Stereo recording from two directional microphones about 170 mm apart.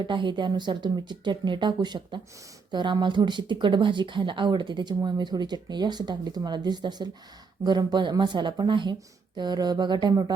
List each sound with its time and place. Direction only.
0.0 s speech: 30° right (ahead or behind)